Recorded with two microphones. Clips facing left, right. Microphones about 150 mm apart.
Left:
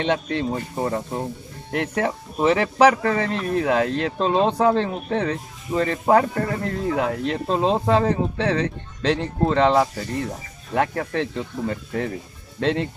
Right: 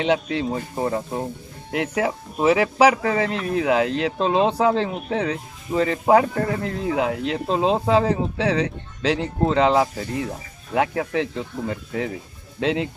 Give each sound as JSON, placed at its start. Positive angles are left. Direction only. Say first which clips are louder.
{"t": 0.0, "sound": "speech", "louder": "right 1 dB", "side_deg": -5}